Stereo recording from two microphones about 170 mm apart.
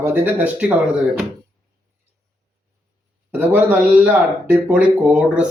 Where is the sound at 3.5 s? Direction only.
10° right (ahead or behind).